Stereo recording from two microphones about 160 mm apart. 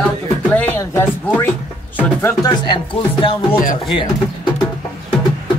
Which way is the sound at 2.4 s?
30° left (ahead or behind).